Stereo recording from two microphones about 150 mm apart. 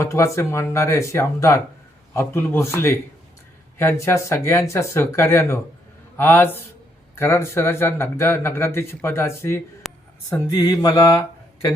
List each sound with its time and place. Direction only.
0.0 s speech: 20° left (ahead or behind)
9.8 s a sound: centre (ahead or behind)
10.2 s speech: 20° left (ahead or behind)